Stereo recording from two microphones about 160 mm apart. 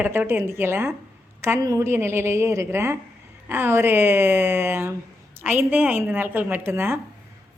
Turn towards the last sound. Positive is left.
turn(degrees=-15)  # may be behind; listen again after turning